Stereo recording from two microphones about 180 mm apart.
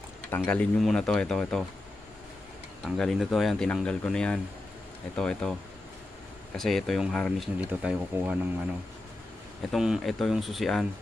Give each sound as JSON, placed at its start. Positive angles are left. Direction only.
{"t": 0.5, "sound": "speech", "side_deg": 5}
{"t": 3.0, "sound": "speech", "side_deg": 0}